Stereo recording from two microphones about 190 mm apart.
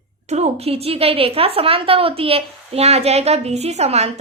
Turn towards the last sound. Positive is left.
turn(degrees=-35)  # may be behind; listen again after turning